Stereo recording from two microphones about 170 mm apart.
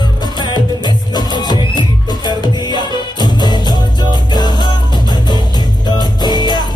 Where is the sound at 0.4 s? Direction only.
25° left (ahead or behind).